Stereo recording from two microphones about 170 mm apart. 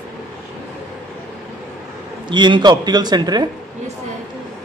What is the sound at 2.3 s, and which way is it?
Speech, 25° right (ahead or behind).